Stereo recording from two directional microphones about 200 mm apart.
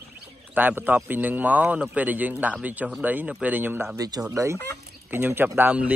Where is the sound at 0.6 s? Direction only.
10° right (ahead or behind).